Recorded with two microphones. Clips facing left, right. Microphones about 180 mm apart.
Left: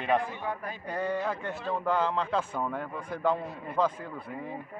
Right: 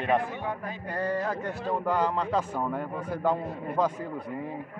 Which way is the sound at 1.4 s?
40° right (ahead or behind).